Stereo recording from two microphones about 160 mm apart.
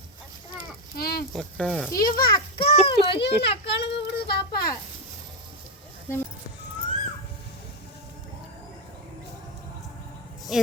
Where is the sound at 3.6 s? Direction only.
90° left.